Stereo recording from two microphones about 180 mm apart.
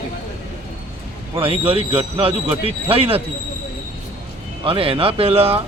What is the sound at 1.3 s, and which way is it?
A man's voice, 30° right (ahead or behind).